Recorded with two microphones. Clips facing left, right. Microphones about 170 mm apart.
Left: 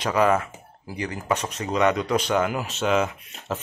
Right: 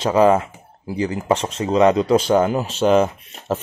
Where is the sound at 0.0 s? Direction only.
30° right (ahead or behind).